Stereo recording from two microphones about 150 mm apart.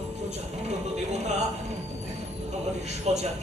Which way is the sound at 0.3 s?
50° right (ahead or behind).